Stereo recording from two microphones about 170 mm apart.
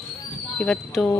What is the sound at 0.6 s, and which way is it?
Speech, 5° left (ahead or behind).